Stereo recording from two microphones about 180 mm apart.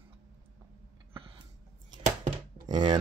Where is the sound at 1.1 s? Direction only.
30° right (ahead or behind).